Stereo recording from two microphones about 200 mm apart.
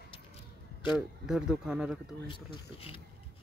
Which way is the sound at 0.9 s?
5° right (ahead or behind).